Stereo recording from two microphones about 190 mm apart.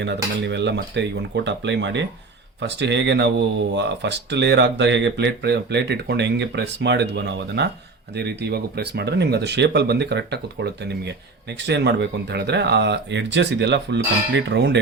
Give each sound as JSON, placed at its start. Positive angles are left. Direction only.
{"t": 0.0, "sound": "speech", "side_deg": -65}